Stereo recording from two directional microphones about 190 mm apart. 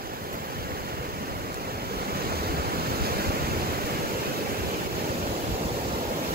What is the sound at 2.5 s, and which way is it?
Waves, 55° right (ahead or behind).